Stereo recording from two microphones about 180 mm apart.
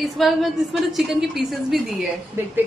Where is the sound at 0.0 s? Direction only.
Centre (ahead or behind).